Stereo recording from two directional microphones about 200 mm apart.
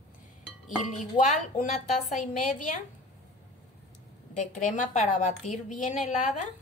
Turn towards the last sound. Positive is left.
turn(degrees=40)  # may be behind; listen again after turning